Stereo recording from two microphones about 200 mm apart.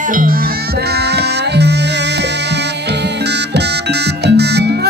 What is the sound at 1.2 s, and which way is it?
Music, 55° right (ahead or behind).